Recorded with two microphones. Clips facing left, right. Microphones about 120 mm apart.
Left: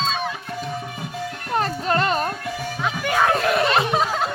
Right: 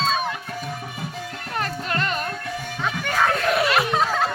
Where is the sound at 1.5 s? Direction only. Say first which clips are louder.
Left 5 dB; 35° left (ahead or behind).